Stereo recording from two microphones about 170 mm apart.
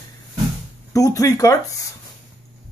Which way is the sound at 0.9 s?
20° left (ahead or behind).